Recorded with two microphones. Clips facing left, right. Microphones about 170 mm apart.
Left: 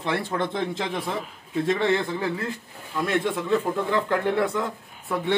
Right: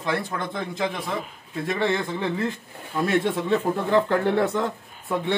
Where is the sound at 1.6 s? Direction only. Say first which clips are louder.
Left 2 dB; 15° left (ahead or behind).